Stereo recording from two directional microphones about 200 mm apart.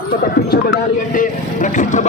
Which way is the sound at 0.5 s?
45° left (ahead or behind).